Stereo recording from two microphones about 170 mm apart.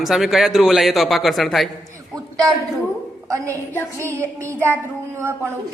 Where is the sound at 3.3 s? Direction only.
15° right (ahead or behind).